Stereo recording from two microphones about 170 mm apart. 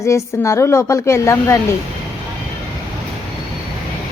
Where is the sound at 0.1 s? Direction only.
15° left (ahead or behind).